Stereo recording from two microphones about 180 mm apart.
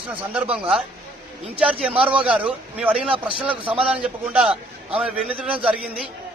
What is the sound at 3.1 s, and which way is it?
Speech, 30° right (ahead or behind).